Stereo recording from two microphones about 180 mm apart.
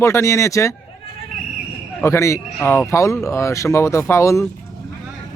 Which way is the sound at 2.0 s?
15° left (ahead or behind).